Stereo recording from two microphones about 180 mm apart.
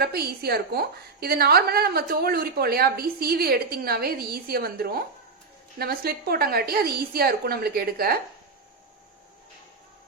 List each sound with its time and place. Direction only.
0.0 s a woman's voice: 60° right (ahead or behind)